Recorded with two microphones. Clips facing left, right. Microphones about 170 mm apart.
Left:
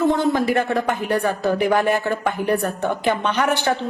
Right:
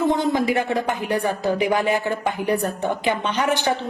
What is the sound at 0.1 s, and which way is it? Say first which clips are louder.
Speech: left 1 dB; 15° right (ahead or behind).